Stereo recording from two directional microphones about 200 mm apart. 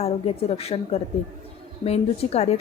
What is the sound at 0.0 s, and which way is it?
Speech, 30° left (ahead or behind).